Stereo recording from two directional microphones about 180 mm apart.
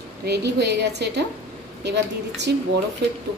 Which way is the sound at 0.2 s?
65° right (ahead or behind).